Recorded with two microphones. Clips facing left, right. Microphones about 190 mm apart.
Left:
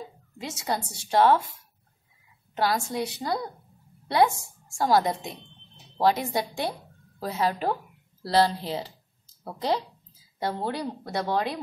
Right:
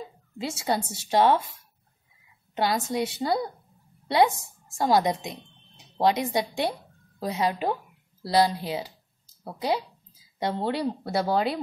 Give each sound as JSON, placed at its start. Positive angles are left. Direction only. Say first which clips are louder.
{"t": 0.4, "sound": "speech", "louder": "right 3 dB", "side_deg": -30}
{"t": 2.5, "sound": "speech", "louder": "right 1 dB", "side_deg": -20}
{"t": 4.7, "sound": "speech", "louder": "even", "side_deg": -20}
{"t": 10.4, "sound": "speech", "louder": "right 3 dB", "side_deg": -25}